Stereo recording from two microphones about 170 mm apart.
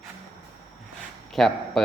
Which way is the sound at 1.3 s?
Centre (ahead or behind).